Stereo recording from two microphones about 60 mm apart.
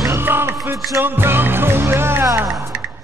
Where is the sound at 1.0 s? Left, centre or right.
Right.